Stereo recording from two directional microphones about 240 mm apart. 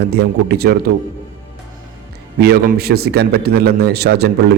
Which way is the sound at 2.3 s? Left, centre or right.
Right.